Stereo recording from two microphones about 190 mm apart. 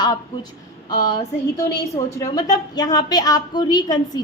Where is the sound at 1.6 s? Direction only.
15° left (ahead or behind).